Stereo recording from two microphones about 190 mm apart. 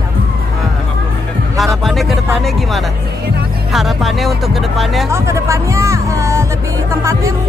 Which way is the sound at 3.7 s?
Centre (ahead or behind).